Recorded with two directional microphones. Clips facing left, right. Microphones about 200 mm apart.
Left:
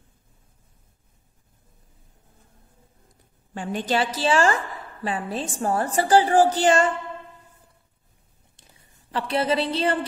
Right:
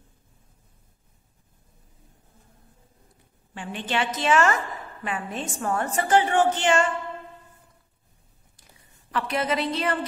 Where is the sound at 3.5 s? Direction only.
40° left (ahead or behind).